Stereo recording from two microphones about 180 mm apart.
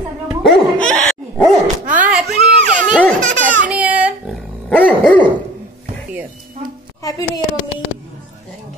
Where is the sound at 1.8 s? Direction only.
10° right (ahead or behind).